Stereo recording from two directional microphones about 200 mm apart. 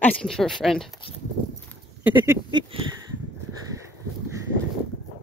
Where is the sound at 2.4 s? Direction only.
25° right (ahead or behind).